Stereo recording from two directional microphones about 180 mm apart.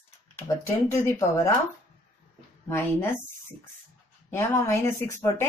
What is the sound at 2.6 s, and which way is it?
Speech, 15° left (ahead or behind).